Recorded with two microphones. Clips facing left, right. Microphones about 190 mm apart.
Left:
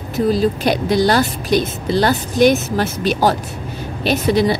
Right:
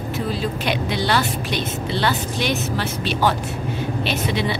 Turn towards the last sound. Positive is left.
turn(degrees=40)  # may be behind; listen again after turning